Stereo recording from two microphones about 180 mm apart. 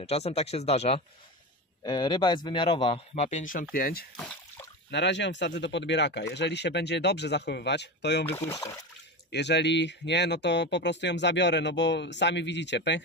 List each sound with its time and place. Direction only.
0.0 s speech: 35° left (ahead or behind)
1.8 s a man's voice: 25° left (ahead or behind); by 3.6 s 45° left (ahead or behind)
3.7 s speech: 55° left (ahead or behind)
4.9 s speech: 80° left
8.3 s speech: 15° left (ahead or behind)
9.3 s speech: 75° left (ahead or behind)